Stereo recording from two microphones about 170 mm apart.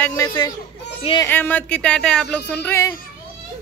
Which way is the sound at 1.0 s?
30° left (ahead or behind).